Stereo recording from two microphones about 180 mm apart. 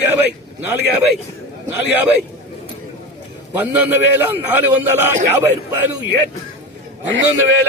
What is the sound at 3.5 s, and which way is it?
A man's voice, 10° right (ahead or behind).